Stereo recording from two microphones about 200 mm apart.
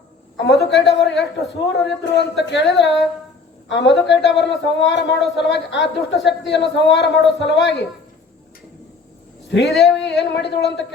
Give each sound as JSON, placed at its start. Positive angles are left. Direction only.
{"t": 0.6, "sound": "speech", "side_deg": 60}
{"t": 9.5, "sound": "speech", "side_deg": 60}
{"t": 9.7, "sound": "a sound", "side_deg": 0}
{"t": 10.3, "sound": "speech", "side_deg": 60}